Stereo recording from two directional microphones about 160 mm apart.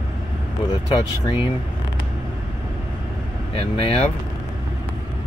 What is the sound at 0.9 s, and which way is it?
Speech, 30° left (ahead or behind).